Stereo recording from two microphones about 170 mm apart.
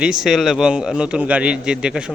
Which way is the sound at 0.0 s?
5° right (ahead or behind).